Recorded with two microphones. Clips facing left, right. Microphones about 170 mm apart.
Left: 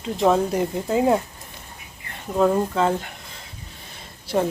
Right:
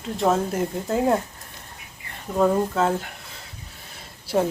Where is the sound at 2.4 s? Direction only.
5° right (ahead or behind).